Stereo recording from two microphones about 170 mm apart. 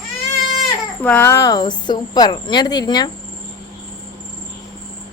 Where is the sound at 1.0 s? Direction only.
15° left (ahead or behind).